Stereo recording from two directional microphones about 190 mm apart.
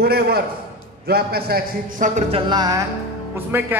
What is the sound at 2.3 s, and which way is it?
Music, 20° right (ahead or behind).